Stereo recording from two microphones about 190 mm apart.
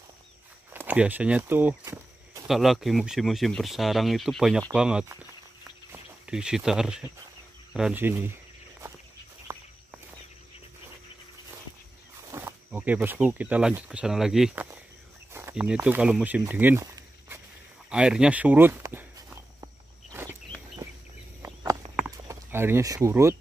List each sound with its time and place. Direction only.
0.7 s walk: 10° right (ahead or behind)
2.4 s speech: centre (ahead or behind)
5.0 s speech: 15° right (ahead or behind)
9.5 s walk: 15° right (ahead or behind)
12.3 s speech: 15° right (ahead or behind)
19.6 s a sound: 15° right (ahead or behind)